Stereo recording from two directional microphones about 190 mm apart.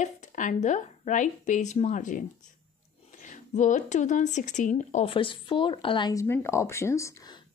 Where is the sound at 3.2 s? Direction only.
40° left (ahead or behind); by 7.4 s 20° left (ahead or behind).